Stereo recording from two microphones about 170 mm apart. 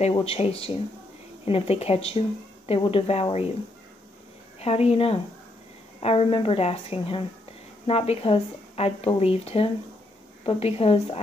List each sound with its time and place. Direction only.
0.1 s a woman's voice: 35° left (ahead or behind)
4.6 s a woman's voice: 35° left (ahead or behind)